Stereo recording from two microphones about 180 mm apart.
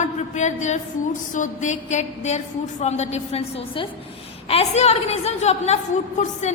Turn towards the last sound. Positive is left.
turn(degrees=40)  # may be behind; listen again after turning